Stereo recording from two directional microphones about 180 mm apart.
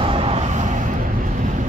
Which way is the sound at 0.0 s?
30° right (ahead or behind).